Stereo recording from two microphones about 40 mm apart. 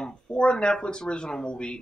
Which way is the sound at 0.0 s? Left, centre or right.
Left.